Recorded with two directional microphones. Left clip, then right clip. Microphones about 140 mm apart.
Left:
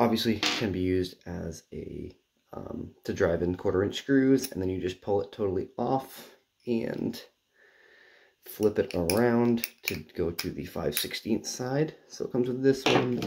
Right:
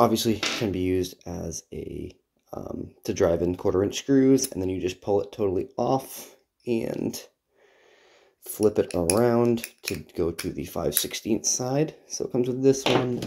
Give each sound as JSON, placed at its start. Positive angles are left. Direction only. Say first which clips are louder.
{"t": 0.0, "sound": "speech", "louder": "right 4 dB", "side_deg": -25}
{"t": 2.5, "sound": "speech", "louder": "right 4 dB", "side_deg": -5}
{"t": 3.0, "sound": "speech", "louder": "right 4 dB", "side_deg": -25}
{"t": 8.5, "sound": "speech", "louder": "right 4 dB", "side_deg": -20}